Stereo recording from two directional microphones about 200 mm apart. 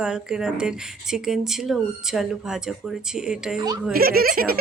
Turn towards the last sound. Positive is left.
turn(degrees=-45)  # may be behind; listen again after turning